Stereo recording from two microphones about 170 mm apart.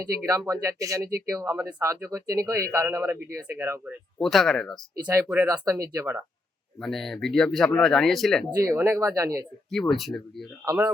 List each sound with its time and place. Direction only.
0.2 s speech: 15° right (ahead or behind)
4.2 s speech: centre (ahead or behind)
5.0 s speech: 10° right (ahead or behind)
6.8 s speech: centre (ahead or behind)
8.5 s speech: 15° right (ahead or behind)
9.7 s speech: centre (ahead or behind)
10.7 s speech: 10° right (ahead or behind)